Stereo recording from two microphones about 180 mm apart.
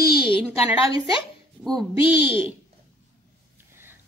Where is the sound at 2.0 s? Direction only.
30° left (ahead or behind).